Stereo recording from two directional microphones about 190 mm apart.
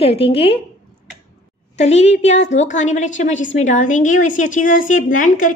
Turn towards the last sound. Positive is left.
turn(degrees=45)  # may be behind; listen again after turning